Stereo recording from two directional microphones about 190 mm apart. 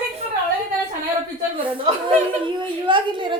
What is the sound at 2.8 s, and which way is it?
Speech, 25° right (ahead or behind).